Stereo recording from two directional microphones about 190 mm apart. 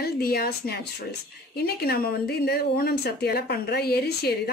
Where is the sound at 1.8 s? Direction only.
55° left (ahead or behind).